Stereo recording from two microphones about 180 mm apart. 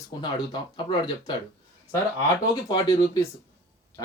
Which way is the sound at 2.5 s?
20° left (ahead or behind).